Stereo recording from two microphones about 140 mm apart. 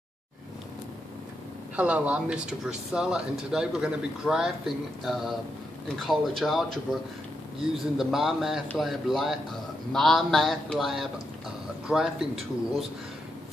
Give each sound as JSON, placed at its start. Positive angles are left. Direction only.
{"t": 1.8, "sound": "speech", "side_deg": -10}
{"t": 8.0, "sound": "speech", "side_deg": 0}